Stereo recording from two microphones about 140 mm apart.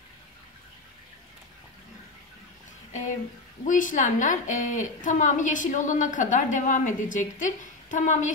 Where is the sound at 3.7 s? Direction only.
70° left (ahead or behind).